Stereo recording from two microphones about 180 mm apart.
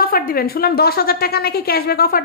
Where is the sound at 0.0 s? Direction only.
55° left (ahead or behind).